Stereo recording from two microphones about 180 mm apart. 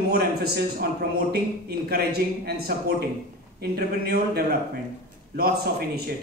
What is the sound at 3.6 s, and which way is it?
Speech, 60° right (ahead or behind).